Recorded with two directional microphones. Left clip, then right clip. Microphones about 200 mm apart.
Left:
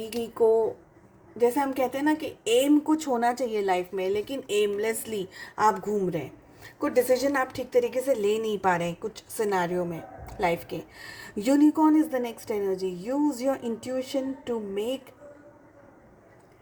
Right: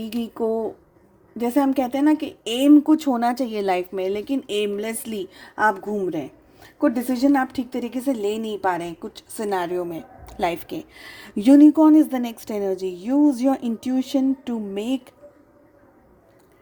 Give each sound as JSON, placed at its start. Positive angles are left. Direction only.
{"t": 0.1, "sound": "a woman's voice", "side_deg": -45}
{"t": 7.5, "sound": "a woman's voice", "side_deg": -45}